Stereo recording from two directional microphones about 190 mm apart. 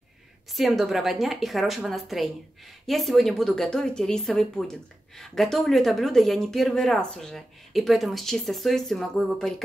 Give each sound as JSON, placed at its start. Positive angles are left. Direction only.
{"t": 0.5, "sound": "speech", "side_deg": 0}